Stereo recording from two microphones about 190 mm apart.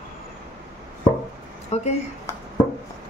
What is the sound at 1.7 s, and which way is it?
Speech, 35° left (ahead or behind).